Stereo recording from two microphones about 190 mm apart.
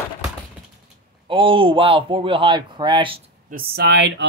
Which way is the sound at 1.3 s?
30° right (ahead or behind).